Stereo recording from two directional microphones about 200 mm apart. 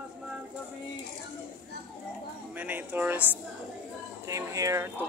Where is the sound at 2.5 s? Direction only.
10° right (ahead or behind).